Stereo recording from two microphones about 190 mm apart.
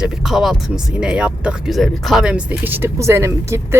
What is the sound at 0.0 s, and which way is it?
Speech, 5° right (ahead or behind).